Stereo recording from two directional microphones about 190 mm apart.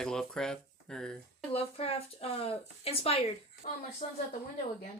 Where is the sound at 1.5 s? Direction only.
30° left (ahead or behind).